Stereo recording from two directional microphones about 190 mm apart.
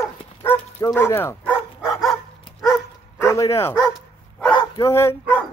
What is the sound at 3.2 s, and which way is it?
Speech, 15° left (ahead or behind).